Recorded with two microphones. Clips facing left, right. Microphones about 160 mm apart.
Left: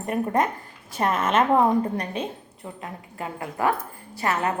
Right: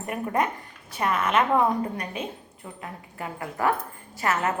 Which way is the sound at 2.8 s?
25° left (ahead or behind).